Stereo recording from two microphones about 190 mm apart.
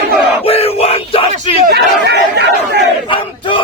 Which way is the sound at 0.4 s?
30° left (ahead or behind).